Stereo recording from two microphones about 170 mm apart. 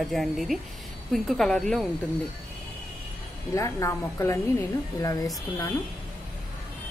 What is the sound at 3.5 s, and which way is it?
A woman's voice, 15° left (ahead or behind).